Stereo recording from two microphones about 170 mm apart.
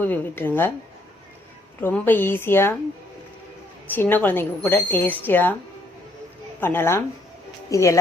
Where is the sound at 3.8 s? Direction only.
10° left (ahead or behind).